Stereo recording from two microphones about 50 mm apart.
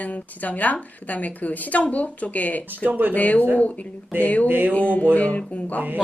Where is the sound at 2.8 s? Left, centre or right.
Right.